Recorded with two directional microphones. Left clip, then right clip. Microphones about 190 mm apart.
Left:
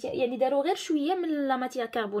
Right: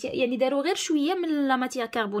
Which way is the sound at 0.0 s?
35° right (ahead or behind).